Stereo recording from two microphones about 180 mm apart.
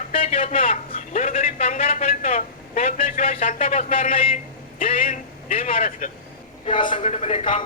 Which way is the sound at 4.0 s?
50° left (ahead or behind).